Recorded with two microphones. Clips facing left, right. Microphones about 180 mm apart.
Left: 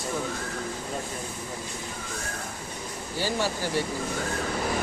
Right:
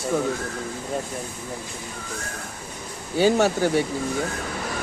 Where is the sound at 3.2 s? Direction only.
60° right (ahead or behind).